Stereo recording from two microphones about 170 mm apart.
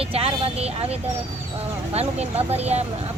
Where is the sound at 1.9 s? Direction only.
40° right (ahead or behind).